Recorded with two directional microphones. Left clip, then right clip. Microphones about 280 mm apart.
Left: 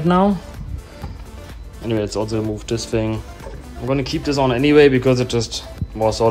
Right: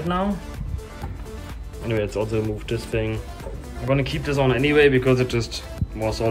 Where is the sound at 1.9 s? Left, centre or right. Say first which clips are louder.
Left 3 dB; centre.